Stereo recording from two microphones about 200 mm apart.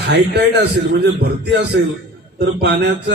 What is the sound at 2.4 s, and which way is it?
Speech, 60° right (ahead or behind).